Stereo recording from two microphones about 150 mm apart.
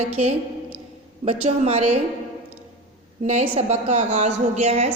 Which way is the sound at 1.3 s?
45° right (ahead or behind).